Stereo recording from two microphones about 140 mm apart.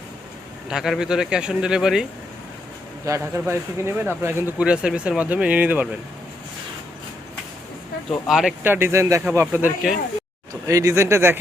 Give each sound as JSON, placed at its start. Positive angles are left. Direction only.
{"t": 0.7, "sound": "a man's voice", "side_deg": -5}
{"t": 3.1, "sound": "speech", "side_deg": -15}
{"t": 8.1, "sound": "a man's voice", "side_deg": 0}
{"t": 8.6, "sound": "speech", "side_deg": -15}